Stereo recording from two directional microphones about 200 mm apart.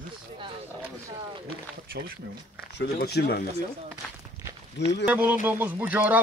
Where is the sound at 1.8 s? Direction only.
50° right (ahead or behind).